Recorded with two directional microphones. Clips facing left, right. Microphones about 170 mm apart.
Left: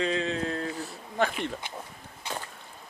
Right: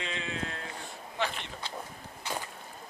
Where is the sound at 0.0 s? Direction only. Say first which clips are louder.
Left 9 dB; 35° left (ahead or behind).